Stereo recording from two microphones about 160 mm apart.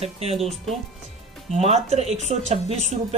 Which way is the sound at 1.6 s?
45° right (ahead or behind).